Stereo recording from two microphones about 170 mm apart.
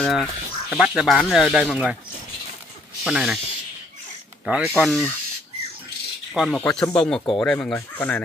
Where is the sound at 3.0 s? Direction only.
5° right (ahead or behind).